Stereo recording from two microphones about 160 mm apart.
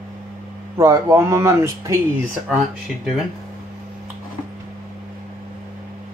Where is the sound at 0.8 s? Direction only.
15° right (ahead or behind).